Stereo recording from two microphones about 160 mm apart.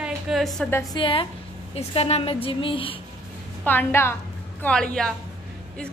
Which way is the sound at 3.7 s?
15° left (ahead or behind).